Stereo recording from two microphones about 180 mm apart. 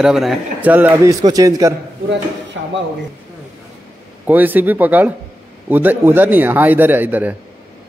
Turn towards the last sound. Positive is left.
turn(degrees=-10)  # may be behind; listen again after turning